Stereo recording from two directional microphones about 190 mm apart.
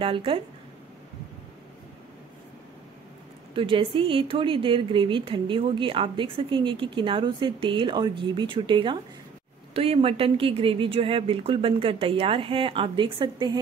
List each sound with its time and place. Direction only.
0.0 s a woman's voice: 30° right (ahead or behind)
3.5 s a woman's voice: 30° right (ahead or behind)